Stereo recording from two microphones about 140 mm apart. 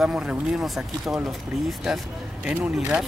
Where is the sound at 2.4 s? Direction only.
10° right (ahead or behind).